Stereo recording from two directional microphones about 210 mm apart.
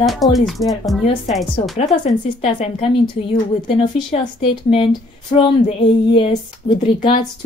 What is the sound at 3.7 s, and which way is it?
Speech, 25° left (ahead or behind).